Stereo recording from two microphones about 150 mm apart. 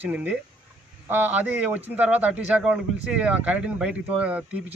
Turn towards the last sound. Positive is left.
turn(degrees=-10)  # may be behind; listen again after turning